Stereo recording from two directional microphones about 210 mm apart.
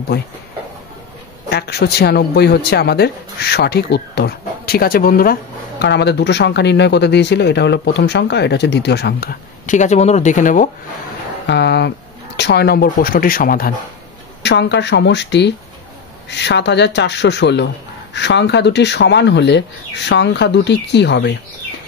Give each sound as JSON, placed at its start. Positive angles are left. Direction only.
{"t": 1.5, "sound": "speech", "side_deg": 50}
{"t": 11.4, "sound": "speech", "side_deg": 55}
{"t": 14.4, "sound": "speech", "side_deg": 55}